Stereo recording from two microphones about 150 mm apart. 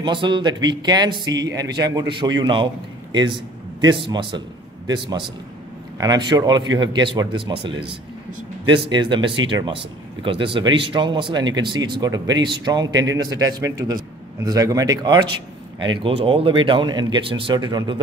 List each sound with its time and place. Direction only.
0.0 s a man's voice: 30° right (ahead or behind)